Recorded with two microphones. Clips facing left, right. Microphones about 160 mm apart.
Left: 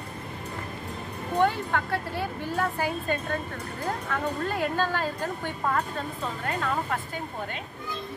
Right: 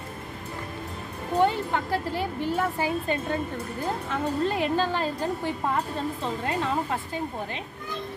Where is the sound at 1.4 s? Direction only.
20° right (ahead or behind).